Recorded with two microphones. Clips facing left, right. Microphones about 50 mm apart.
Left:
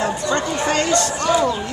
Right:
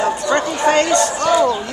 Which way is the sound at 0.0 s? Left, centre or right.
Centre.